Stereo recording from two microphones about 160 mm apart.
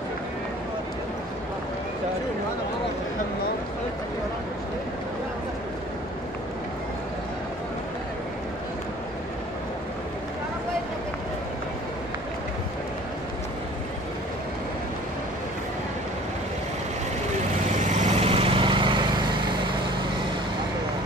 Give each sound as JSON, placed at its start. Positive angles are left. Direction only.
{"t": 17.7, "sound": "vehicle", "side_deg": -50}